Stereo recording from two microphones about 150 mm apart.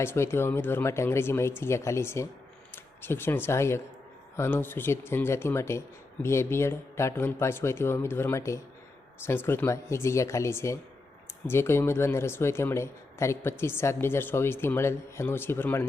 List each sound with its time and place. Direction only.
0.0 s speech: 15° left (ahead or behind)